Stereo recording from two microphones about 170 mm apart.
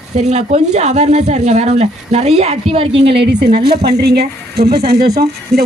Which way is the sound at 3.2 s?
75° right (ahead or behind).